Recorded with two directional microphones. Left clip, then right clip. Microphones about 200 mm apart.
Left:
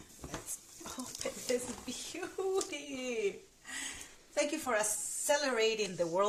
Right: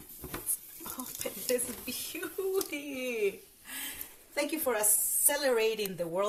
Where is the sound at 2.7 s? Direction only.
15° left (ahead or behind).